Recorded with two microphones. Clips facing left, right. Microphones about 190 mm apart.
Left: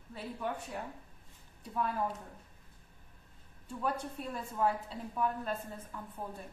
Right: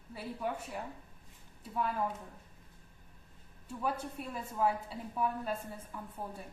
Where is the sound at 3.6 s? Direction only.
5° right (ahead or behind).